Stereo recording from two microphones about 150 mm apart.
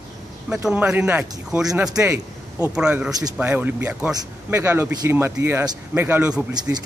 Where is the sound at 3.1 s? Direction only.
25° right (ahead or behind).